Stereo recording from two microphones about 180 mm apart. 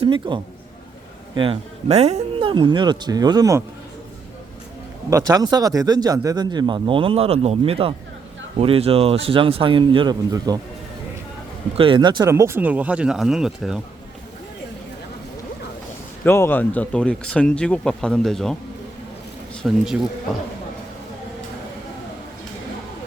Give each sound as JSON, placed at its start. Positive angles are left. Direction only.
{"t": 0.0, "sound": "speech", "side_deg": -25}
{"t": 5.0, "sound": "speech", "side_deg": -20}
{"t": 11.8, "sound": "speech", "side_deg": -25}
{"t": 12.2, "sound": "speech", "side_deg": -15}
{"t": 16.2, "sound": "speech", "side_deg": 10}
{"t": 19.6, "sound": "speech", "side_deg": -5}